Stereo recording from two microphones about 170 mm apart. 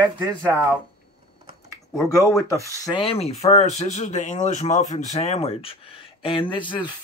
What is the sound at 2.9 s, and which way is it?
Speech, 35° left (ahead or behind).